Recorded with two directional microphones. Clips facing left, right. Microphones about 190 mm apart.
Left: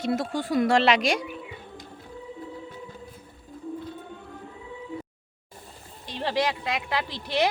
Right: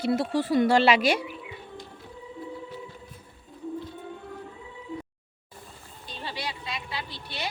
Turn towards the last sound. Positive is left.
turn(degrees=90)